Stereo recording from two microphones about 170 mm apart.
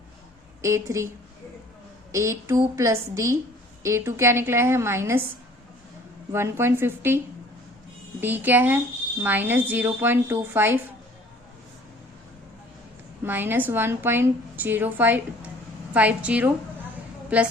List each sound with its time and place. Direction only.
0.6 s a woman's voice: 15° right (ahead or behind)
2.1 s a woman's voice: 15° right (ahead or behind)
6.3 s a woman's voice: 15° right (ahead or behind)
8.2 s a woman's voice: 10° right (ahead or behind)
13.2 s a woman's voice: 10° right (ahead or behind)